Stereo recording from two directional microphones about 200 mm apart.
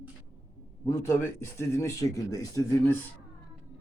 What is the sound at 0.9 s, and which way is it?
Speech, 15° left (ahead or behind).